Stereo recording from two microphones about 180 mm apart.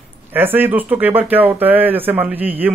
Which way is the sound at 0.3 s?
10° right (ahead or behind).